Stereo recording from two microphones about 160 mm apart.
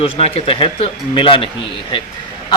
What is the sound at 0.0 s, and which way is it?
Speech, 35° left (ahead or behind).